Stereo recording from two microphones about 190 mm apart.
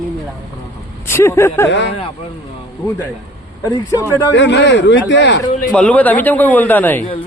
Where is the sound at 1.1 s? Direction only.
15° left (ahead or behind).